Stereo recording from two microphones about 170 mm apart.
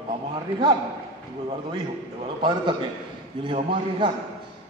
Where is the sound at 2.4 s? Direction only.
30° right (ahead or behind).